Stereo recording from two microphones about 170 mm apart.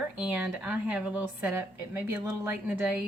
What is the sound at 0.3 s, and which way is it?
Speech, 10° right (ahead or behind).